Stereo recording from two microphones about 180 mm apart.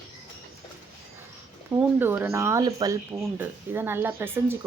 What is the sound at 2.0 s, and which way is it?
Speech, 10° right (ahead or behind).